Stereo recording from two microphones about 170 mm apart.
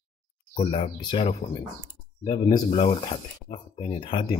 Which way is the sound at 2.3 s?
20° left (ahead or behind).